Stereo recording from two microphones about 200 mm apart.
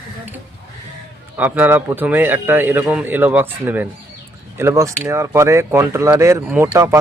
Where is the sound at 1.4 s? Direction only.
10° right (ahead or behind).